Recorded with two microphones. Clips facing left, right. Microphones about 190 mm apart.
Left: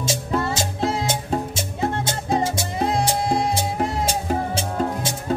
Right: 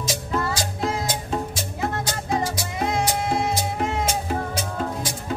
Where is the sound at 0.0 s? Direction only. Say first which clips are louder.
Left 2 dB; 25° left (ahead or behind).